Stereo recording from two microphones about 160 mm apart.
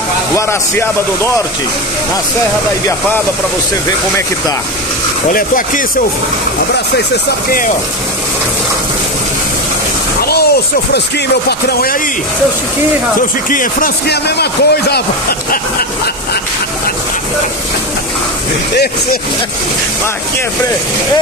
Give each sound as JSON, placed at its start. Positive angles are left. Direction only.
{"t": 0.4, "sound": "a man's voice", "side_deg": 15}
{"t": 10.2, "sound": "a sound", "side_deg": 80}
{"t": 11.4, "sound": "speech", "side_deg": 70}
{"t": 13.5, "sound": "speech", "side_deg": 60}